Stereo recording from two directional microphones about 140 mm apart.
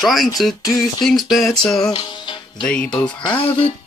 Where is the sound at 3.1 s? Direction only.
35° left (ahead or behind).